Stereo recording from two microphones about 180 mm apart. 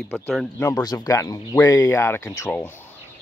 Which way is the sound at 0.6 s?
15° left (ahead or behind).